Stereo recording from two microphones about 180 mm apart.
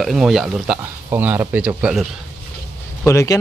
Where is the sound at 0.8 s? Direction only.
10° right (ahead or behind).